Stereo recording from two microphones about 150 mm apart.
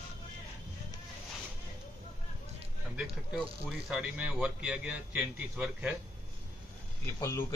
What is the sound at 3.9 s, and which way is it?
A man's voice, 10° right (ahead or behind).